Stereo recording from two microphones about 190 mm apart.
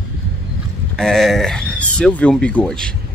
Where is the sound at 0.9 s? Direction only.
Centre (ahead or behind).